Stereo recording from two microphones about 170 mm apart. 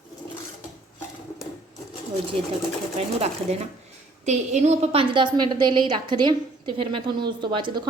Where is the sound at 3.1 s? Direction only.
40° right (ahead or behind).